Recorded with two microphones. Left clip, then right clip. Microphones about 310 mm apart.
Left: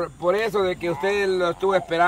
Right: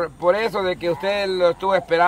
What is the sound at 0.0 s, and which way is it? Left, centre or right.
Speech, centre.